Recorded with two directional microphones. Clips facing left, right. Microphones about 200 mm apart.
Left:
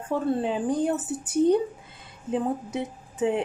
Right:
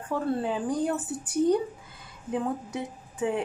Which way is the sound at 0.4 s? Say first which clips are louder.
Left 3 dB; 20° left (ahead or behind).